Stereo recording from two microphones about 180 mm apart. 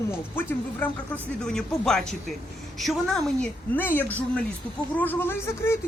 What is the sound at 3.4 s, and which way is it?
Speech, 10° left (ahead or behind).